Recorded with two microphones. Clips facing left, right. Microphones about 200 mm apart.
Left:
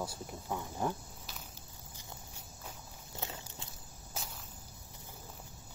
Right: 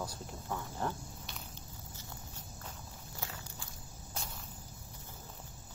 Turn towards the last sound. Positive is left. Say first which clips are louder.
# even
turn(degrees=5)  # may be behind; listen again after turning